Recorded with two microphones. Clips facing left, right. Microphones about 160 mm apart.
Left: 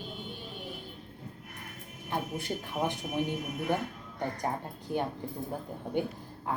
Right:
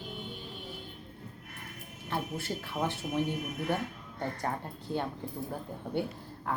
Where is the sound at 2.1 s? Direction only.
15° left (ahead or behind).